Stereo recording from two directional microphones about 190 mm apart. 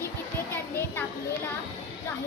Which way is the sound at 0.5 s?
10° left (ahead or behind).